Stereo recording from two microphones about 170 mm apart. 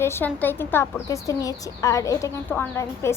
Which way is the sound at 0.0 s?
15° left (ahead or behind).